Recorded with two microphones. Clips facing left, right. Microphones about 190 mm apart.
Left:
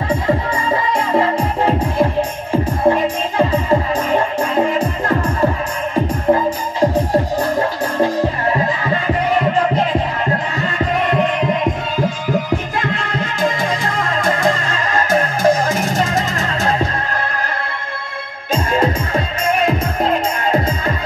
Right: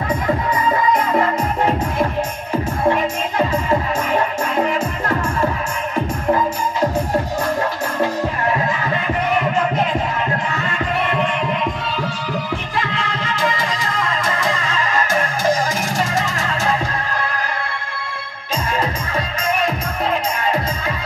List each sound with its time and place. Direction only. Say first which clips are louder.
0.7 s music: right 1 dB; 30° left (ahead or behind)
4.7 s music: left 3 dB; 35° left (ahead or behind)
11.1 s music: left 4 dB; 40° left (ahead or behind)
12.7 s music: left 3 dB; 45° left (ahead or behind)
15.4 s music: left 4 dB; 60° left (ahead or behind)
18.5 s music: left 5 dB; 50° left (ahead or behind)